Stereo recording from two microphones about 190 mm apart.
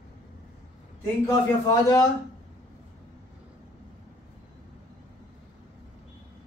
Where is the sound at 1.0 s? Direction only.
20° left (ahead or behind).